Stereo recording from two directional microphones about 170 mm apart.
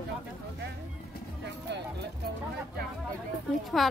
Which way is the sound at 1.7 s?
90° right.